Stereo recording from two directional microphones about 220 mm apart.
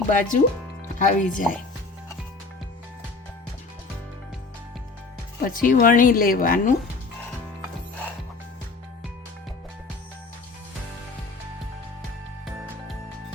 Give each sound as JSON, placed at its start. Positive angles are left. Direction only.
{"t": 0.1, "sound": "a woman's voice", "side_deg": 35}
{"t": 5.4, "sound": "a woman's voice", "side_deg": 40}